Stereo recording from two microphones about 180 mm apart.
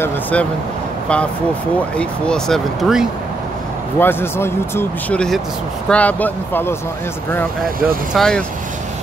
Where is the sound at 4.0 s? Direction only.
10° left (ahead or behind).